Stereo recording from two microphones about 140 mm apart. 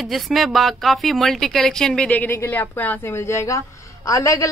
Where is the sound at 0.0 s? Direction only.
Centre (ahead or behind).